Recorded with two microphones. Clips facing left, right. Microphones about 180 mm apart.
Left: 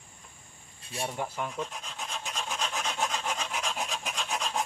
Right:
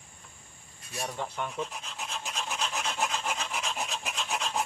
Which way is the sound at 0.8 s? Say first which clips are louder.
Left 2 dB; 30° left (ahead or behind).